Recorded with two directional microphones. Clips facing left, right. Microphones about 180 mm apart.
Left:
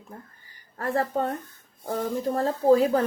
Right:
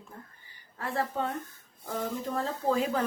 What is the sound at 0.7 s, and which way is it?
Speech, 45° left (ahead or behind).